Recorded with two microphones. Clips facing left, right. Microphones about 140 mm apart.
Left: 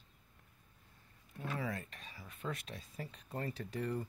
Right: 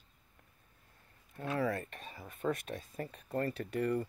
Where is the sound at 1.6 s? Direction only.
60° right (ahead or behind).